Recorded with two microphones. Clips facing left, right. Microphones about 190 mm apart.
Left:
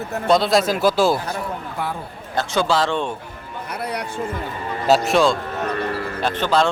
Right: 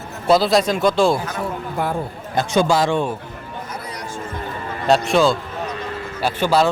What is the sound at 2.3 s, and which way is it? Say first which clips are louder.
Speech: right 3 dB; 15° right (ahead or behind).